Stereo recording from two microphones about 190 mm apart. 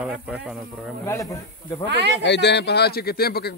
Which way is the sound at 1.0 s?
15° left (ahead or behind).